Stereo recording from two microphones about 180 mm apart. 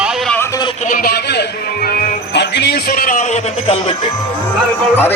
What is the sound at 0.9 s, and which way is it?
Speech, 55° left (ahead or behind).